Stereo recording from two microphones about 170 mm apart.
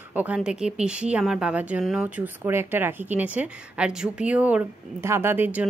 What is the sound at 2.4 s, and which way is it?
A woman's voice, 15° right (ahead or behind).